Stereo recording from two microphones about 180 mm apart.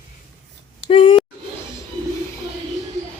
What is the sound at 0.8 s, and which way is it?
Speech, 30° left (ahead or behind).